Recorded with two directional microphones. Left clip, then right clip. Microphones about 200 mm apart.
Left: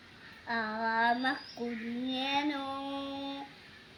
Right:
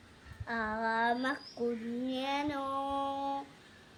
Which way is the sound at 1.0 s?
15° right (ahead or behind).